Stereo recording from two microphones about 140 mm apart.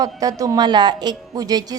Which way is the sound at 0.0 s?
25° right (ahead or behind).